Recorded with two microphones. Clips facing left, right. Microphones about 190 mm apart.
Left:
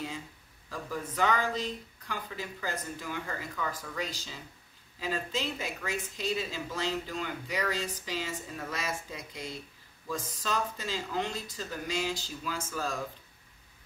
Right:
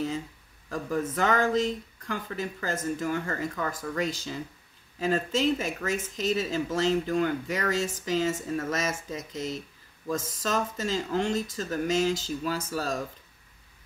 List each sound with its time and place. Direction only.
0.7 s speech: 50° right (ahead or behind)